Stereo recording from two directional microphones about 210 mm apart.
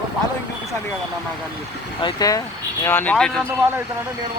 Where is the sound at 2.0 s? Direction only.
20° left (ahead or behind); by 3.4 s 5° left (ahead or behind).